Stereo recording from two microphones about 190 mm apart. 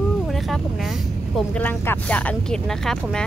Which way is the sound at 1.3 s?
10° left (ahead or behind).